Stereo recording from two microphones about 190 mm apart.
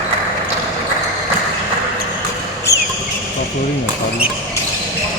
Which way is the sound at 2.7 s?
15° left (ahead or behind).